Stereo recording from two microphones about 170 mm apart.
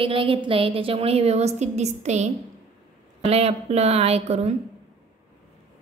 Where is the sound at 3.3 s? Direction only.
35° right (ahead or behind).